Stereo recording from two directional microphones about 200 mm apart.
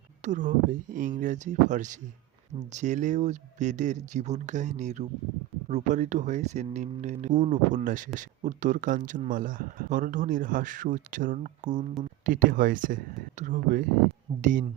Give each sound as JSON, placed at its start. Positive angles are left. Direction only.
{"t": 0.3, "sound": "speech", "side_deg": -40}